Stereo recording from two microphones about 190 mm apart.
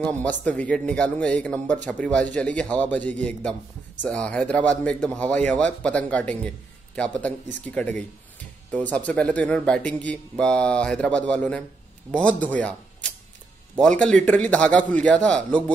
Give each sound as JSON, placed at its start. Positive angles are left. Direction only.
{"t": 0.2, "sound": "speech", "side_deg": 5}
{"t": 13.7, "sound": "speech", "side_deg": 5}